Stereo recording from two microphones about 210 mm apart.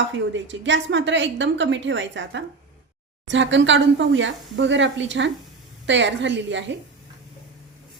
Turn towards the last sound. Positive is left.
turn(degrees=-60)  # may be behind; listen again after turning